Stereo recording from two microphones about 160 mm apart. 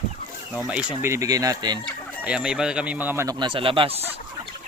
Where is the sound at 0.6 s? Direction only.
5° right (ahead or behind).